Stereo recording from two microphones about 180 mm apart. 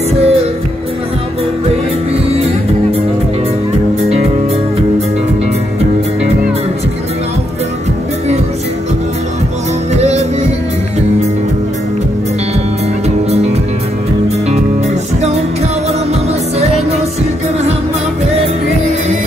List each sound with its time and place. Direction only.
0.2 s music: 35° right (ahead or behind)
4.0 s music: 35° right (ahead or behind)
9.9 s music: 35° right (ahead or behind)